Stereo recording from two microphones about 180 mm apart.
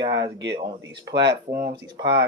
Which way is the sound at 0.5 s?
25° right (ahead or behind).